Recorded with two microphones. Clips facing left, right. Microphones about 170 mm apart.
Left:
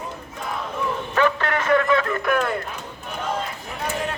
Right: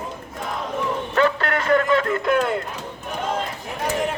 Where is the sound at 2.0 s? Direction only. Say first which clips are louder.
Right 2 dB; 25° right (ahead or behind).